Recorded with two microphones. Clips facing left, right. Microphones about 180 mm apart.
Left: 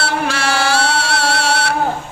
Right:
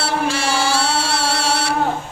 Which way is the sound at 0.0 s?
65° left (ahead or behind).